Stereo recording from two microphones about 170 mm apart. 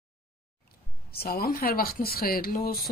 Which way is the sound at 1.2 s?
60° left (ahead or behind).